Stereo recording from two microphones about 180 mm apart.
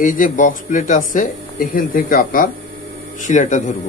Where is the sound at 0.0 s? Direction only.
50° left (ahead or behind).